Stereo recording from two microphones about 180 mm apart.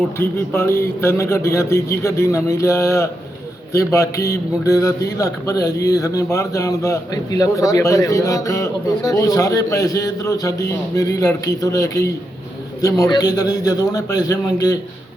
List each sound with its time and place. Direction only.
0.2 s a man's voice: 10° left (ahead or behind)